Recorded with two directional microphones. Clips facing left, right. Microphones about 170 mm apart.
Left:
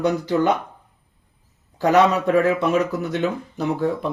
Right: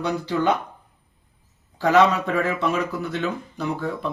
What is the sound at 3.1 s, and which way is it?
Speech, 40° left (ahead or behind).